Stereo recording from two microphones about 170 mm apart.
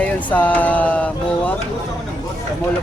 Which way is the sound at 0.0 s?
10° left (ahead or behind).